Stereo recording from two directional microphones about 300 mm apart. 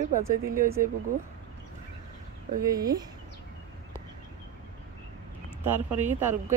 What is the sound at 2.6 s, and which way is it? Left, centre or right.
Speech, centre.